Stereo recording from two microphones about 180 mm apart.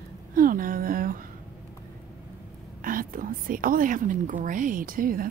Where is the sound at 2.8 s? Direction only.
50° right (ahead or behind).